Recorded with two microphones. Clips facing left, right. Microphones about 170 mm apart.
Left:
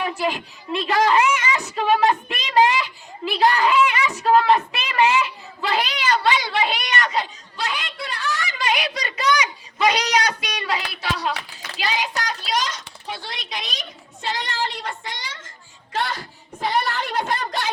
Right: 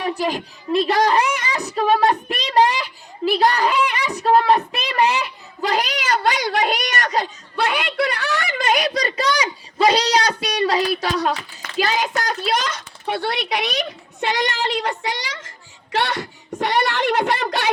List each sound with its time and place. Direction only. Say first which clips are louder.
0.0 s speech: right 2 dB; 35° right (ahead or behind)
7.5 s a child's voice: right 8 dB; 65° right (ahead or behind); by 17.7 s 80° right